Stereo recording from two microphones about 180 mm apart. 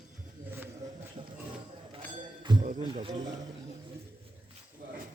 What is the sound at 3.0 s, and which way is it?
Speech, 25° right (ahead or behind).